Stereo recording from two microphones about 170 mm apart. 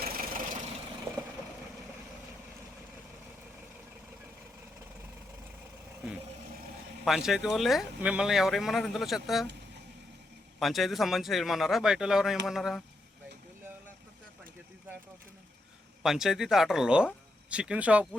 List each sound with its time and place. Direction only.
0.0 s vehicle: 60° right (ahead or behind)
7.0 s speech: centre (ahead or behind)
10.6 s speech: centre (ahead or behind)
16.0 s speech: 5° right (ahead or behind)